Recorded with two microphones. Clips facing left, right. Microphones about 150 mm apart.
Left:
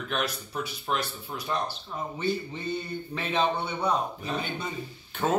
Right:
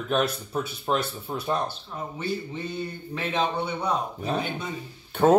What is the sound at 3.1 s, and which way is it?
Speech, 10° right (ahead or behind).